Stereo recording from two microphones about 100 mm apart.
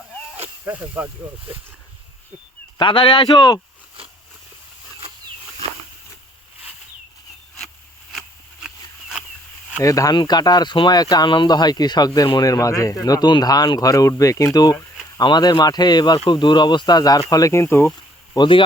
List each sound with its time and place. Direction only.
0.6 s speech: 25° right (ahead or behind)
2.7 s speech: 55° left (ahead or behind)
8.6 s a sound: 10° right (ahead or behind)
9.8 s speech: 35° left (ahead or behind)
18.3 s speech: 60° left (ahead or behind)